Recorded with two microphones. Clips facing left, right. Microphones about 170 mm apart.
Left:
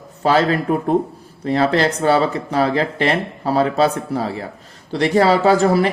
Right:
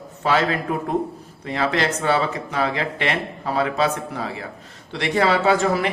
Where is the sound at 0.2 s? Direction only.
35° left (ahead or behind).